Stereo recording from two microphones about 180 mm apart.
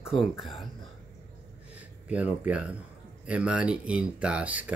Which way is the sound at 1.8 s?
10° right (ahead or behind).